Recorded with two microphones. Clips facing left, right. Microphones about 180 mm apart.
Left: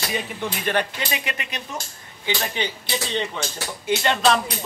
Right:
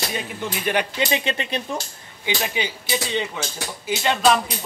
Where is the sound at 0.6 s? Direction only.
10° right (ahead or behind).